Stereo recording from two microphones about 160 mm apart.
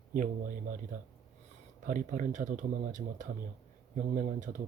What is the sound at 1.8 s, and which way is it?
Speech, 55° right (ahead or behind).